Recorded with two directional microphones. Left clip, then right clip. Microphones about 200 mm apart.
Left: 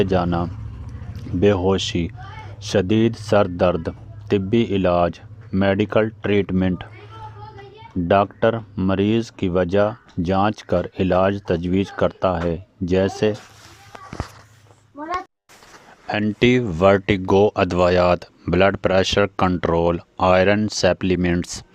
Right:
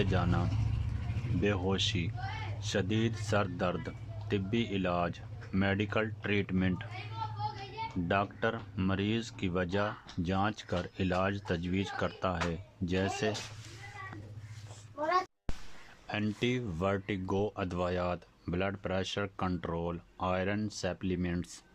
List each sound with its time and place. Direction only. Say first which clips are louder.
0.0 s speech: left 14 dB; 35° left (ahead or behind)
8.0 s speech: left 15 dB; 40° left (ahead or behind)
16.0 s speech: left 15 dB; 40° left (ahead or behind)